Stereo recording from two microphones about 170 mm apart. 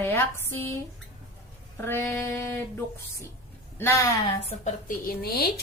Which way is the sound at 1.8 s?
15° left (ahead or behind).